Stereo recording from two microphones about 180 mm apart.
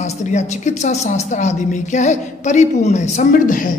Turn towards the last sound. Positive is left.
turn(degrees=45)  # may be behind; listen again after turning